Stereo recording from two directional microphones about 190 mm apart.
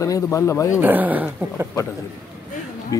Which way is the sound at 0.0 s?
15° left (ahead or behind).